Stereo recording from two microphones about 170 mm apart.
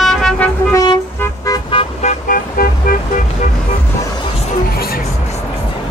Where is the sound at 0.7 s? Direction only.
20° left (ahead or behind).